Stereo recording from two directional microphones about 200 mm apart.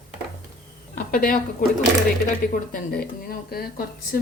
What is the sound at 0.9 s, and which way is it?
Speech, 45° left (ahead or behind).